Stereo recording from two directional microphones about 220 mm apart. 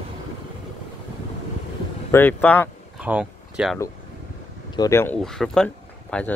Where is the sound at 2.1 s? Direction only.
10° left (ahead or behind).